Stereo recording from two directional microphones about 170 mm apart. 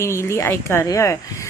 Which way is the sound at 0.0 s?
15° left (ahead or behind).